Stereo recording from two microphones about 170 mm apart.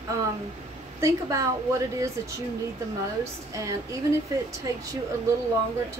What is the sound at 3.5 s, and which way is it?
Speech, 20° right (ahead or behind).